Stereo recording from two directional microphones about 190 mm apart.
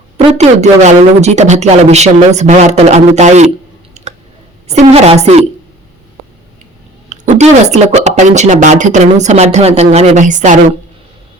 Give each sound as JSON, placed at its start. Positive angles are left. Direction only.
{"t": 0.3, "sound": "speech", "side_deg": -35}
{"t": 4.0, "sound": "clicking", "side_deg": -35}
{"t": 4.7, "sound": "speech", "side_deg": -35}
{"t": 7.1, "sound": "speech", "side_deg": -35}